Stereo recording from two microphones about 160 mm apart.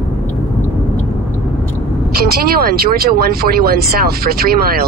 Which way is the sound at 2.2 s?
70° right (ahead or behind).